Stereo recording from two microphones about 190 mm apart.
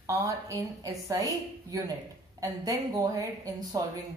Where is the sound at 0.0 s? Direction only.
15° right (ahead or behind).